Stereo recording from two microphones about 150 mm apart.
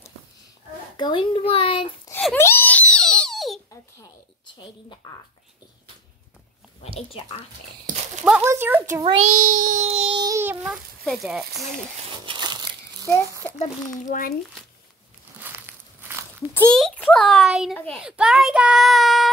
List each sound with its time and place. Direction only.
0.9 s a child's voice: 30° left (ahead or behind)
2.3 s crying: 15° left (ahead or behind)
4.6 s speech: 30° left (ahead or behind)
6.8 s a child's voice: 40° left (ahead or behind)
7.9 s a sound: 60° right (ahead or behind)
8.4 s speech: 15° right (ahead or behind)
9.0 s speech: 55° right (ahead or behind)
9.8 s baby cry: 45° right (ahead or behind)
10.2 s a child's voice: 20° right (ahead or behind)
10.7 s child singing: 5° right (ahead or behind)
12.3 s crushing: 30° right (ahead or behind)
13.6 s a child's voice: 55° left (ahead or behind)
15.3 s a sound: 15° right (ahead or behind)
16.5 s child singing: 5° left (ahead or behind)